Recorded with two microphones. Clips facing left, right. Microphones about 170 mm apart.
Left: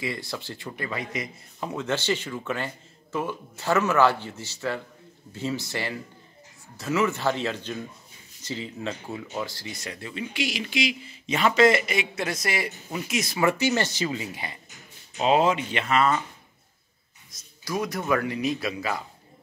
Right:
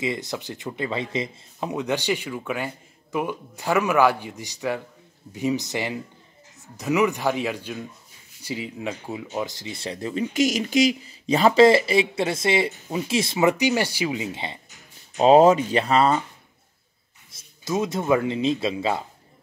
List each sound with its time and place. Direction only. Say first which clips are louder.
0.0 s speech: right 4 dB; 20° right (ahead or behind)
15.1 s speech: right 7 dB; 40° right (ahead or behind)
17.3 s speech: right 4 dB; 25° right (ahead or behind)